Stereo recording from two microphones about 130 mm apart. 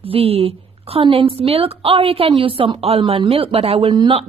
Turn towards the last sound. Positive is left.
turn(degrees=-40)  # may be behind; listen again after turning